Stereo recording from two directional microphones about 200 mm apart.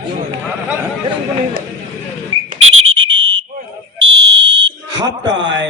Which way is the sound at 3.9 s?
60° right (ahead or behind).